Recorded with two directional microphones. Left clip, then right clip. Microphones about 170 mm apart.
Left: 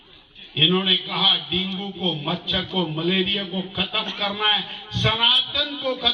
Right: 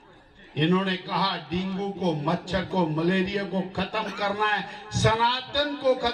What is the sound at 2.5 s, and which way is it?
A man's voice, 35° right (ahead or behind).